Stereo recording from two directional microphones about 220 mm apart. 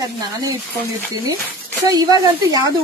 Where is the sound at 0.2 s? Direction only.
15° right (ahead or behind).